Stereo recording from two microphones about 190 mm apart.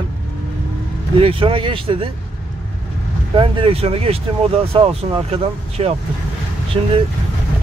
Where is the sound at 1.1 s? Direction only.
30° right (ahead or behind).